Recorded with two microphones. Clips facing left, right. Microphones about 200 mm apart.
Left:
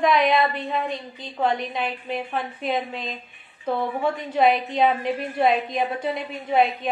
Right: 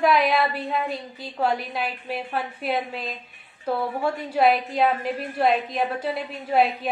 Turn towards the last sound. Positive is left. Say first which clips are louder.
# even
turn(degrees=-5)  # may be behind; listen again after turning